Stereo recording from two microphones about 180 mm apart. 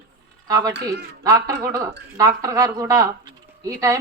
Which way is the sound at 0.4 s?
20° right (ahead or behind).